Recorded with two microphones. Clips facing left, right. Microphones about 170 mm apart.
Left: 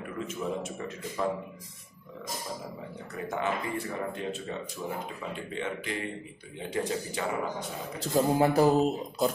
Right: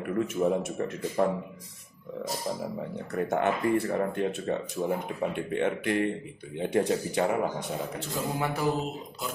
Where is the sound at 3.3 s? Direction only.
60° right (ahead or behind).